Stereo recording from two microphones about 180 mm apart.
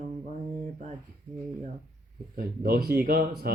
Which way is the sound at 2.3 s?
55° right (ahead or behind).